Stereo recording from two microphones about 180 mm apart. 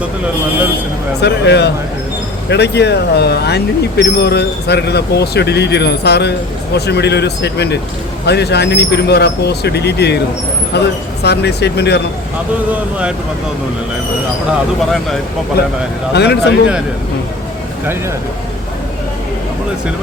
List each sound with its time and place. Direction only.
1.2 s speech: 70° left (ahead or behind)
16.1 s speech: 65° left (ahead or behind)